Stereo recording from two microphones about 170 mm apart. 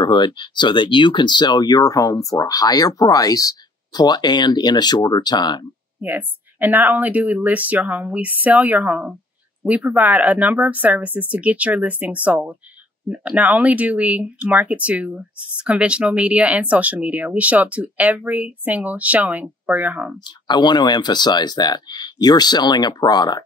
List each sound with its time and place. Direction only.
0.0 s speech: 25° left (ahead or behind)
5.9 s speech: 10° right (ahead or behind)
20.2 s speech: 25° left (ahead or behind)